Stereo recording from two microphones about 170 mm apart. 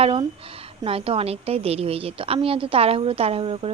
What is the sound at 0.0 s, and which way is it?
A woman's voice, 35° right (ahead or behind).